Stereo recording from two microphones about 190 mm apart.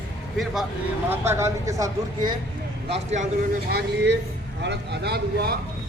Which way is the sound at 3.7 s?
60° right (ahead or behind).